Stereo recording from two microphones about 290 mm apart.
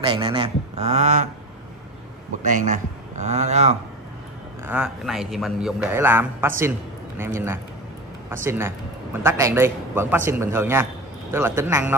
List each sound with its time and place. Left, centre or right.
0.0 s a man's voice: centre
2.4 s a man's voice: right
4.6 s a man's voice: centre